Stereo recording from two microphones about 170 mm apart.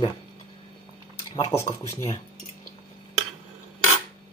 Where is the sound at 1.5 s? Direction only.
20° left (ahead or behind).